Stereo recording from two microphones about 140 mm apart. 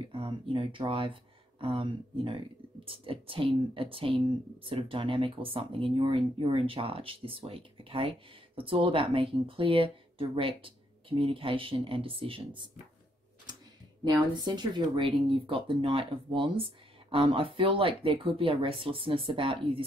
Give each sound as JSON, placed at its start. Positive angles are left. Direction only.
{"t": 0.1, "sound": "speech", "side_deg": -35}
{"t": 14.0, "sound": "speech", "side_deg": -30}